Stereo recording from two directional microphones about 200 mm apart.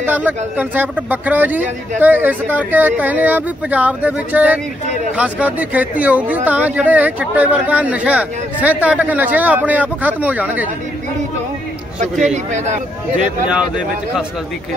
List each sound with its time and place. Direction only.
0.0 s speech: 10° right (ahead or behind)
12.0 s speech: 35° right (ahead or behind)
13.5 s speech: 5° right (ahead or behind)